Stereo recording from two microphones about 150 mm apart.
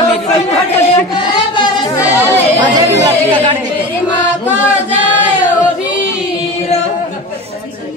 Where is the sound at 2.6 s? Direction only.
25° right (ahead or behind).